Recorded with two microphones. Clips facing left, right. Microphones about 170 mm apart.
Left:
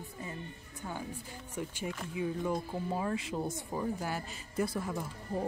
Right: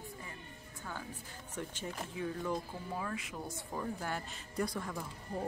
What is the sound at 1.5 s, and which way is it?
Speech, 10° left (ahead or behind).